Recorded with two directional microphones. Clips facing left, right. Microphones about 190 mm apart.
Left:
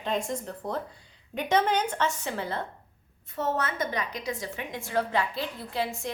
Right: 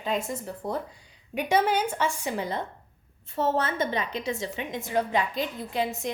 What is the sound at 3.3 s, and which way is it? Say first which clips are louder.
A woman's voice: right 3 dB; 30° right (ahead or behind).